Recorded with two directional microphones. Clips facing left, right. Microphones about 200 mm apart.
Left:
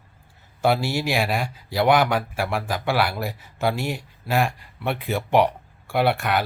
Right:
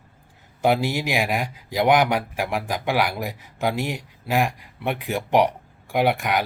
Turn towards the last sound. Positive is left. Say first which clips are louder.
# even
turn(degrees=-15)  # may be behind; listen again after turning